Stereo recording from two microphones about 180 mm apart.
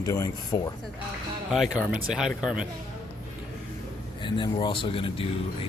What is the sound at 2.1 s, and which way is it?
Speech, 5° right (ahead or behind).